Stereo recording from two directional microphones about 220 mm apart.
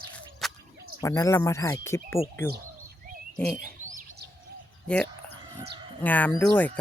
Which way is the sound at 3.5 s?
35° right (ahead or behind).